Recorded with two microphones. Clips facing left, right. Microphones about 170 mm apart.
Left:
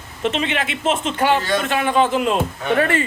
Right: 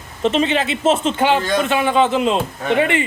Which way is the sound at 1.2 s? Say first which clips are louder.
Right 2 dB; 25° right (ahead or behind).